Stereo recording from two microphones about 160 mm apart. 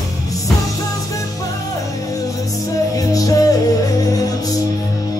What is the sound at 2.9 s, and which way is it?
Music, 20° left (ahead or behind).